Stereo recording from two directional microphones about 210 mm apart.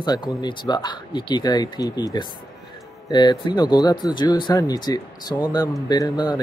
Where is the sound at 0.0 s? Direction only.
20° left (ahead or behind).